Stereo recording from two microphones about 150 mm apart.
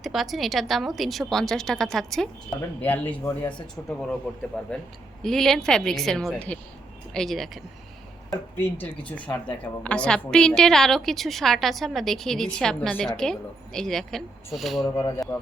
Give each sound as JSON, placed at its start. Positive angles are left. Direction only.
{"t": 0.0, "sound": "a woman's voice", "side_deg": 0}
{"t": 4.6, "sound": "a woman's voice", "side_deg": 5}
{"t": 8.3, "sound": "a woman's voice", "side_deg": 15}
{"t": 14.8, "sound": "speech", "side_deg": 20}